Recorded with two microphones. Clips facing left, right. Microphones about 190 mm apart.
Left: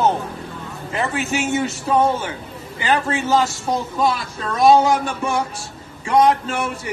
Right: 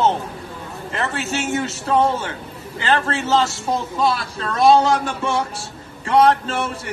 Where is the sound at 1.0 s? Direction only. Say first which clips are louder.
Left 2 dB; 15° left (ahead or behind).